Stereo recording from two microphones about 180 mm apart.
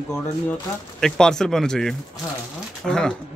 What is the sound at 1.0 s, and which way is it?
A man's voice, 5° left (ahead or behind).